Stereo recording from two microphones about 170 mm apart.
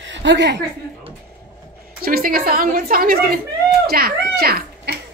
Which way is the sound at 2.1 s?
60° right (ahead or behind).